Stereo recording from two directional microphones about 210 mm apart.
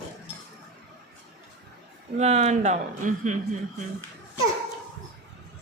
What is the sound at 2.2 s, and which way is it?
Speech, 30° right (ahead or behind).